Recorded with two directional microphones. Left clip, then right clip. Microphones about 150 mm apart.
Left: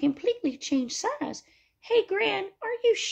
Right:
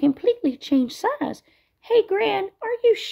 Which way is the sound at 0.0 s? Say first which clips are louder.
Right 6 dB; 35° right (ahead or behind).